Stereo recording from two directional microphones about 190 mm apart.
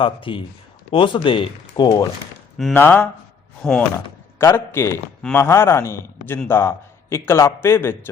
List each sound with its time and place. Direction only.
0.0 s speech: 25° left (ahead or behind)
2.6 s speech: centre (ahead or behind)
3.9 s speech: 15° left (ahead or behind)